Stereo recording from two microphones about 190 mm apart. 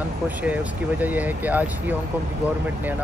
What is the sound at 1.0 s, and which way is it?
Speech, 10° right (ahead or behind).